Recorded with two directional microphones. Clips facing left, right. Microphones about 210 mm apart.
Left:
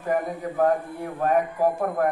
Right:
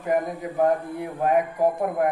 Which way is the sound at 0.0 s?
15° right (ahead or behind).